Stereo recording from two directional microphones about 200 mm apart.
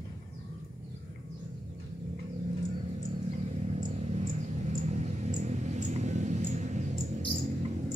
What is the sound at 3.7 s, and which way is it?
Mouse, 30° right (ahead or behind).